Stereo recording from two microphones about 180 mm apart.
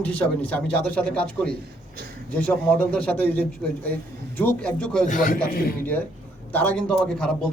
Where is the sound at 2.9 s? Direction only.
5° left (ahead or behind).